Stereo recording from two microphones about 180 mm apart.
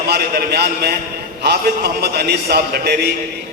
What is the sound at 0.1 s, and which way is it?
A man's voice, 60° right (ahead or behind).